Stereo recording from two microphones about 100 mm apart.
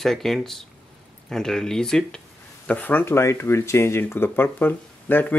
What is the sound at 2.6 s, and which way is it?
Speech, 15° left (ahead or behind).